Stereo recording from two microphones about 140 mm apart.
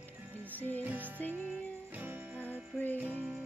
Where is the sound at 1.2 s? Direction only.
10° left (ahead or behind).